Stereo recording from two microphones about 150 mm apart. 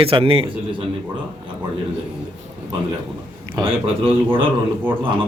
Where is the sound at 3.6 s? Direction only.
35° right (ahead or behind).